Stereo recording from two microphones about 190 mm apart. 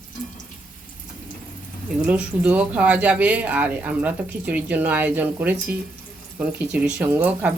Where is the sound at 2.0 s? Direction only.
5° right (ahead or behind).